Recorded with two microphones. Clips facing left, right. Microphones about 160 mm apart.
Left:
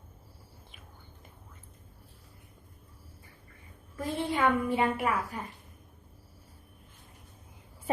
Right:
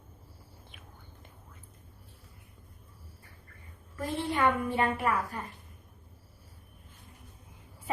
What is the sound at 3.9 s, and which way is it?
A woman's voice, 10° left (ahead or behind).